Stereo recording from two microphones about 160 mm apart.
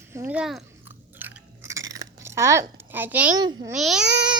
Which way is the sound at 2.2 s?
15° right (ahead or behind).